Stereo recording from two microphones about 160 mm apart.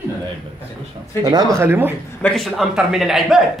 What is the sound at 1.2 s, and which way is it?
Speech, 20° right (ahead or behind).